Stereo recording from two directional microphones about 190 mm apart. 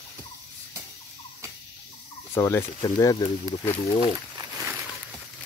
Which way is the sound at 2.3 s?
15° left (ahead or behind).